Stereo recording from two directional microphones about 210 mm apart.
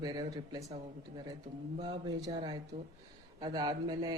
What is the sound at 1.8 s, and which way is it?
Speech, 20° right (ahead or behind).